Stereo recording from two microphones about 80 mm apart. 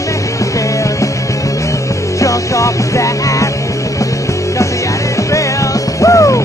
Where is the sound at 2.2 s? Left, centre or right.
Left.